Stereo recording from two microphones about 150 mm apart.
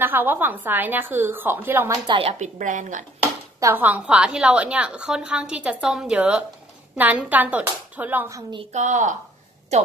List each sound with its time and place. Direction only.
0.0 s a woman's voice: 15° right (ahead or behind)
2.0 s a woman's voice: 35° right (ahead or behind)
2.3 s a woman's voice: 55° right (ahead or behind)
3.5 s a woman's voice: 15° right (ahead or behind)
8.7 s speech: 55° right (ahead or behind)